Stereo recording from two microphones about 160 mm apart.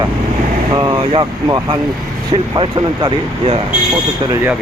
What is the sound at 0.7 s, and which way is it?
Speech, 25° right (ahead or behind).